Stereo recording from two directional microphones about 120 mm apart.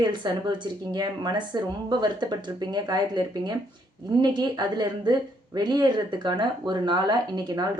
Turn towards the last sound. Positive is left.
turn(degrees=-35)  # may be behind; listen again after turning